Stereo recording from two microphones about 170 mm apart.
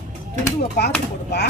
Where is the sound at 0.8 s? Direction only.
75° left (ahead or behind).